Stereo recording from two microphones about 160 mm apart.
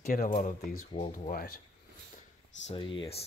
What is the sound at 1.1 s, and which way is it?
Speech, 60° left (ahead or behind).